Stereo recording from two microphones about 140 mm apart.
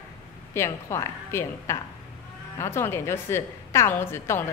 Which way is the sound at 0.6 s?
20° left (ahead or behind).